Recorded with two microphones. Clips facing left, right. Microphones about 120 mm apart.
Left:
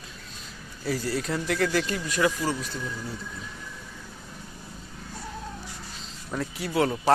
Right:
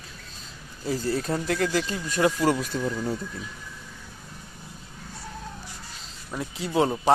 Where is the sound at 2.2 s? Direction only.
45° right (ahead or behind).